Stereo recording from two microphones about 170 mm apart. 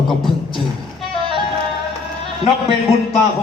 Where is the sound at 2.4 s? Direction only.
35° left (ahead or behind).